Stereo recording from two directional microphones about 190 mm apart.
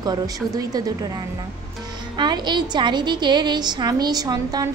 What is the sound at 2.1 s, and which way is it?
A woman's voice, 25° right (ahead or behind).